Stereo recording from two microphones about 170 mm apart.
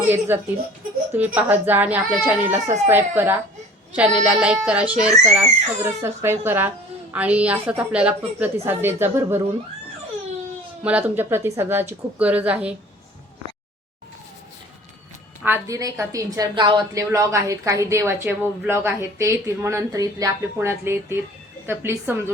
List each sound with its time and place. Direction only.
0.3 s a woman's voice: 10° right (ahead or behind)
10.8 s a woman's voice: 10° right (ahead or behind)
15.4 s a woman's voice: 15° right (ahead or behind)